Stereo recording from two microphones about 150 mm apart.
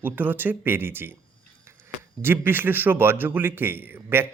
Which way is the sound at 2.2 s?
15° right (ahead or behind).